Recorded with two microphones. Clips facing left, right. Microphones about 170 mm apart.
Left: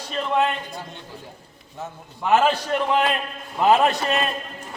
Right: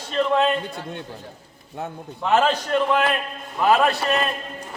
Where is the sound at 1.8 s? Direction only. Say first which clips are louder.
Right 3 dB; 60° right (ahead or behind).